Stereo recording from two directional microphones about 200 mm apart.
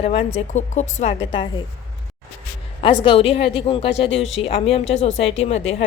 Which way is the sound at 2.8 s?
25° left (ahead or behind).